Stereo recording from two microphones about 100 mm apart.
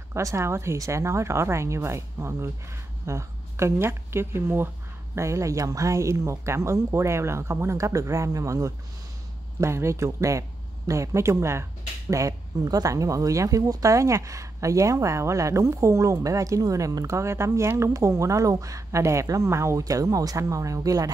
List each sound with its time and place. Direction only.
0.1 s a woman's voice: 30° right (ahead or behind)